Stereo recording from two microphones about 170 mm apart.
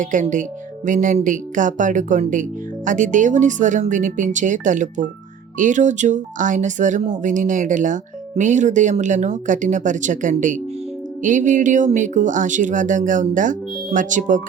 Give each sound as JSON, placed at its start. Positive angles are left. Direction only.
{"t": 0.0, "sound": "speech", "side_deg": -50}